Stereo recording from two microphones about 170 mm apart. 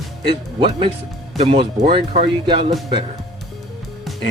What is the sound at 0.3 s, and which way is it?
Speech, 30° right (ahead or behind).